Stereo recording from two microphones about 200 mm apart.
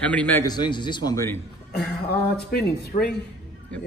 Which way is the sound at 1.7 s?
55° left (ahead or behind).